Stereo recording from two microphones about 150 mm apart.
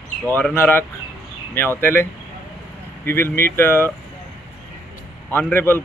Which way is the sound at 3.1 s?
15° left (ahead or behind).